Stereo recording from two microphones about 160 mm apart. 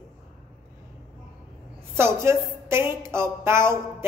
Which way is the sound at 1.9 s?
15° right (ahead or behind).